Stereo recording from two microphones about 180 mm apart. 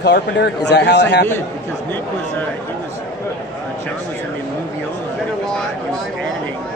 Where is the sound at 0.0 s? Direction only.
70° left (ahead or behind).